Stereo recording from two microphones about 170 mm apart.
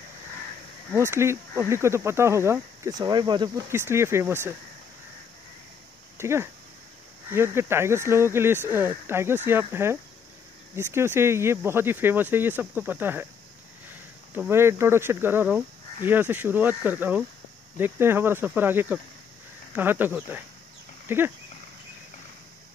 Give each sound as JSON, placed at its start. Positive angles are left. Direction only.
{"t": 0.9, "sound": "speech", "side_deg": -15}
{"t": 3.7, "sound": "speech", "side_deg": -15}
{"t": 6.1, "sound": "speech", "side_deg": -15}
{"t": 14.3, "sound": "speech", "side_deg": -15}